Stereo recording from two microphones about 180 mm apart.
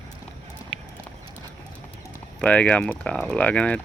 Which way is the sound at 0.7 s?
30° right (ahead or behind).